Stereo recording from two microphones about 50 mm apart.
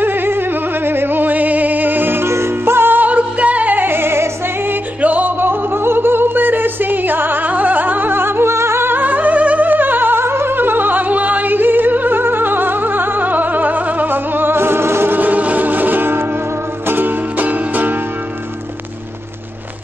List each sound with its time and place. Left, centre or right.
0.0 s a sound: right
2.2 s music: right
3.0 s music: right
5.0 s music: right
5.4 s music: right
15.1 s music: right